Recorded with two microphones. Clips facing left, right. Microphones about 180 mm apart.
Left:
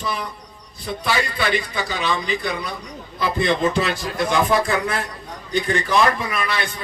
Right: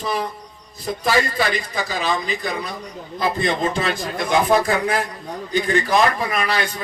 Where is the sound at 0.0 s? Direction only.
35° right (ahead or behind).